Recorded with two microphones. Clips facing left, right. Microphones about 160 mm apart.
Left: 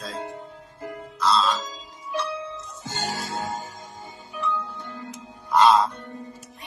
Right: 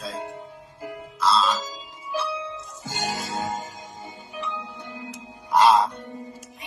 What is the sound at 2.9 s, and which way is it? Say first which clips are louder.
Music: right 1 dB; 15° right (ahead or behind).